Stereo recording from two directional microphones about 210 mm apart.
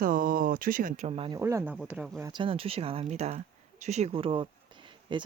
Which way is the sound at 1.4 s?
15° right (ahead or behind).